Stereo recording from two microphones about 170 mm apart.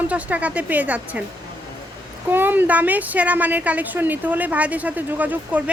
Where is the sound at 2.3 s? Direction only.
10° right (ahead or behind).